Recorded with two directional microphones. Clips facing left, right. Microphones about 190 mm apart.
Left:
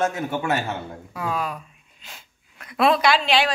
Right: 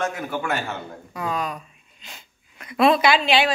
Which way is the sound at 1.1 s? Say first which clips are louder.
Even; 5° left (ahead or behind).